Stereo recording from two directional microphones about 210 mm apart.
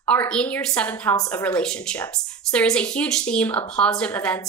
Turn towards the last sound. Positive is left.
turn(degrees=5)  # may be behind; listen again after turning